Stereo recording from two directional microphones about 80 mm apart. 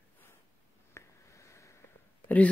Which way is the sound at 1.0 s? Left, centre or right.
Left.